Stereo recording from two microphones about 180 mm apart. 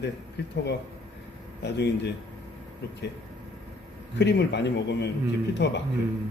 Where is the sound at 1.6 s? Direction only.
70° left (ahead or behind).